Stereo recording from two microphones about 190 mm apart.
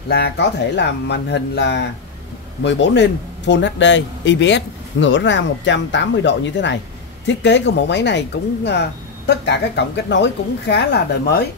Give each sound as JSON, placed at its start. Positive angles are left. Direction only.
{"t": 0.1, "sound": "speech", "side_deg": 60}